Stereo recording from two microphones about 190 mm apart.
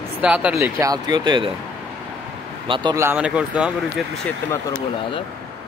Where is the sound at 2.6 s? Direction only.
25° right (ahead or behind).